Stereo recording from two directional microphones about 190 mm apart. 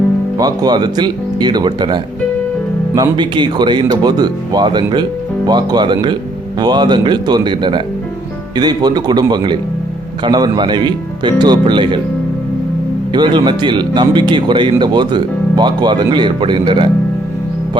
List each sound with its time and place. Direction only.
0.3 s speech: 20° right (ahead or behind)
13.1 s speech: 25° right (ahead or behind)